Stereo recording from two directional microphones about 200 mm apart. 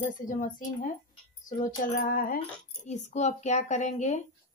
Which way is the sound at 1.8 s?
45° left (ahead or behind).